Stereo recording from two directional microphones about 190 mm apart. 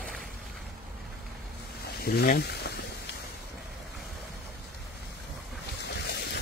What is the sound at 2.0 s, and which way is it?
Speech, 55° left (ahead or behind).